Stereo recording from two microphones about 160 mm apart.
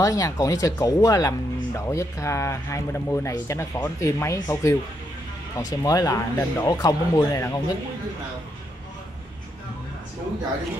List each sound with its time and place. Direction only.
0.0 s speech: 20° left (ahead or behind)